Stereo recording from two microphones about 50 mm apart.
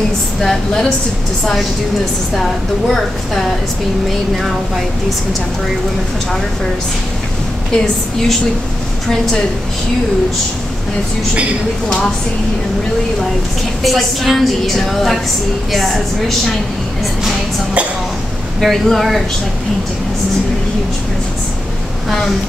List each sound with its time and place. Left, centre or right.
0.4 s a woman's voice: centre
2.9 s a woman's voice: centre
7.7 s a woman's voice: centre
13.8 s a woman's voice: centre
18.6 s a woman's voice: centre